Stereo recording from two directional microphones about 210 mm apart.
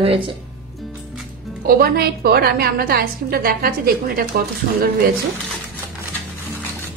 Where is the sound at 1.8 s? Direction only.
50° right (ahead or behind).